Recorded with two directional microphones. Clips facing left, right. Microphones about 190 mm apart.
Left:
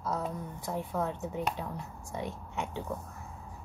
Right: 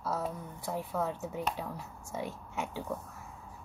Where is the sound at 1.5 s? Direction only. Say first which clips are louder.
Left 1 dB; 5° right (ahead or behind).